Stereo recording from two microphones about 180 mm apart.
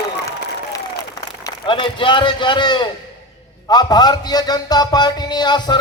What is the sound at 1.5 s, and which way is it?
A man's voice, 25° left (ahead or behind).